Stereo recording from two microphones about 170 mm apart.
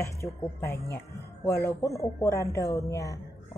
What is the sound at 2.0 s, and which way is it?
A woman's voice, 20° left (ahead or behind).